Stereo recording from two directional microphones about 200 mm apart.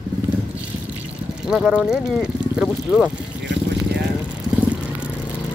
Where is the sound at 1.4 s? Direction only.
5° right (ahead or behind).